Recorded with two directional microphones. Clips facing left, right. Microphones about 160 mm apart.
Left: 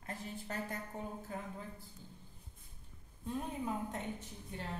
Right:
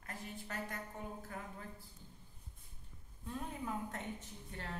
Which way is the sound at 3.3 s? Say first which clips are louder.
Left 4 dB; 20° left (ahead or behind).